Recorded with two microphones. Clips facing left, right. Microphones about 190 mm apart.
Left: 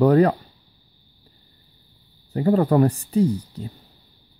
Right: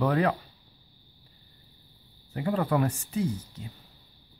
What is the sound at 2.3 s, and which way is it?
Speech, 40° left (ahead or behind).